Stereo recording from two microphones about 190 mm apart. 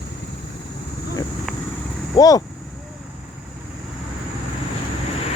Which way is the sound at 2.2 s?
20° left (ahead or behind).